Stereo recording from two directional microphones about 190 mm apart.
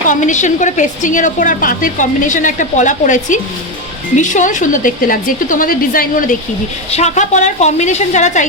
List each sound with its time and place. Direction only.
0.1 s a woman's voice: 40° left (ahead or behind)